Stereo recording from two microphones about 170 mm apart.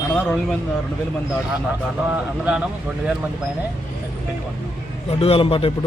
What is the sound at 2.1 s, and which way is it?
Speech, 5° right (ahead or behind).